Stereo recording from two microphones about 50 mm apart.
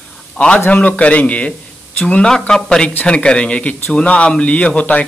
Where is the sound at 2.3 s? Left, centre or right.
Centre.